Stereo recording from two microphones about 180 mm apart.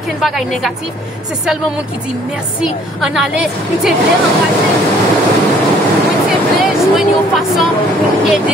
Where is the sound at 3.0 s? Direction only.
Centre (ahead or behind).